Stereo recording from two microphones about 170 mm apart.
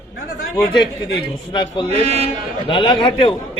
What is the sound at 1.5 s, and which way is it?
Speech, 25° left (ahead or behind).